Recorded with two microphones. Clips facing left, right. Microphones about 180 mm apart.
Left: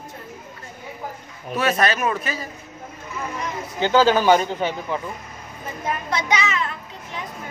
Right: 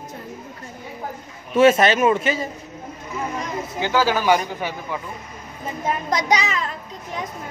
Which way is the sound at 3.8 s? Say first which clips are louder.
Left 3 dB; 20° left (ahead or behind).